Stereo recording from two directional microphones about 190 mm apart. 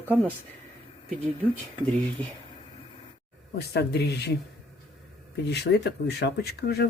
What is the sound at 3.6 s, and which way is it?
Speech, 60° left (ahead or behind).